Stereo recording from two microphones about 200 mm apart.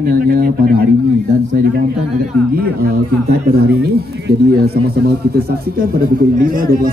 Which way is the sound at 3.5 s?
50° right (ahead or behind).